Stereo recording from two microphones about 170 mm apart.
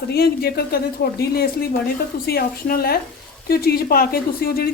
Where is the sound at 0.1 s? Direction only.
70° left (ahead or behind).